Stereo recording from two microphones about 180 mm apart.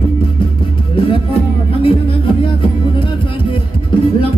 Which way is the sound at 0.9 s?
30° left (ahead or behind).